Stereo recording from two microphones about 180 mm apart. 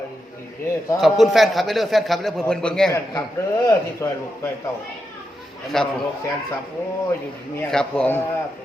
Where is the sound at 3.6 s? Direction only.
15° left (ahead or behind).